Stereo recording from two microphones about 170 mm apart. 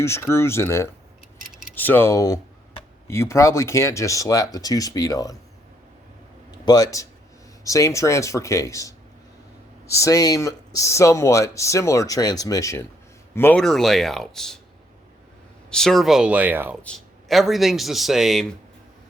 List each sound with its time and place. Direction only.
0.0 s speech: 15° left (ahead or behind)
6.7 s speech: 20° left (ahead or behind)
13.6 s speech: centre (ahead or behind)
15.7 s speech: 5° left (ahead or behind)
16.8 s speech: 5° left (ahead or behind)